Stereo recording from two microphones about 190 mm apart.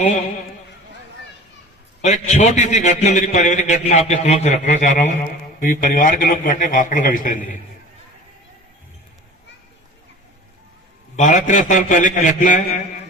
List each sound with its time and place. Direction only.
2.0 s a man's voice: 35° left (ahead or behind)
11.2 s a man's voice: 40° left (ahead or behind)